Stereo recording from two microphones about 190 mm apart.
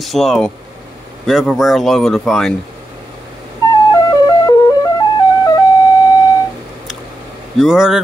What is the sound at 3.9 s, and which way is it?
Flute, 20° left (ahead or behind).